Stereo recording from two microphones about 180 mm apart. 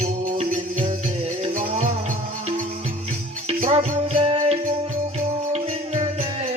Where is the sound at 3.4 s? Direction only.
35° right (ahead or behind).